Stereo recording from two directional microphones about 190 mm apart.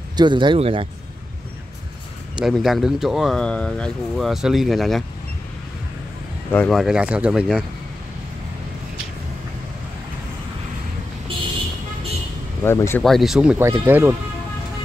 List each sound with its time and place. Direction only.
0.1 s speech: 25° right (ahead or behind)
2.3 s speech: centre (ahead or behind)
6.5 s speech: 5° left (ahead or behind)
12.6 s speech: 15° left (ahead or behind)
13.0 s speech: centre (ahead or behind)